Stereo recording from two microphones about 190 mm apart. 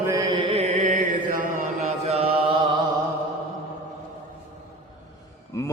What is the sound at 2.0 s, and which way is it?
Chant, 35° right (ahead or behind).